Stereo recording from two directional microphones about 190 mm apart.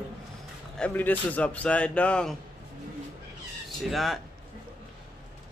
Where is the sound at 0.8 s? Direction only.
10° left (ahead or behind).